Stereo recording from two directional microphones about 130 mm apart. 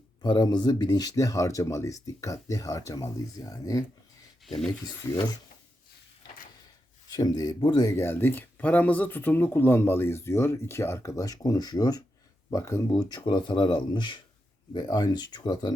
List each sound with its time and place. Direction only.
0.2 s speech: 35° left (ahead or behind)
5.0 s speech: 30° left (ahead or behind)
7.1 s speech: 30° left (ahead or behind)